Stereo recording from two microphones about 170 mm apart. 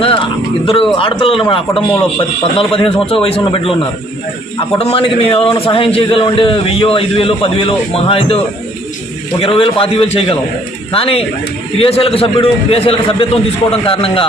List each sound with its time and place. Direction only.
0.0 s a man's voice: 30° left (ahead or behind)
9.4 s a man's voice: 35° left (ahead or behind)